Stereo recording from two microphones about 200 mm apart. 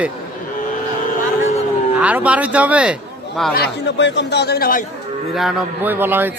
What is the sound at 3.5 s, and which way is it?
A man's voice, 60° left (ahead or behind).